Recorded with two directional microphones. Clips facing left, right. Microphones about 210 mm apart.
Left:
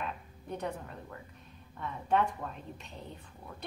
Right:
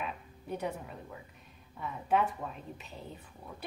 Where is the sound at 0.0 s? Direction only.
5° right (ahead or behind).